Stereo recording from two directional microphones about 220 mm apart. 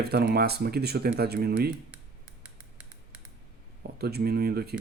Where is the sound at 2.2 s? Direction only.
90° right.